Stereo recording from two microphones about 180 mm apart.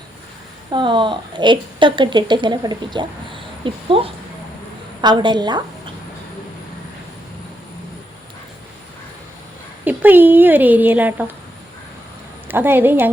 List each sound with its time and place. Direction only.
0.7 s a woman's voice: 25° right (ahead or behind)
9.8 s a woman's voice: 10° right (ahead or behind)
12.5 s a woman's voice: 10° right (ahead or behind)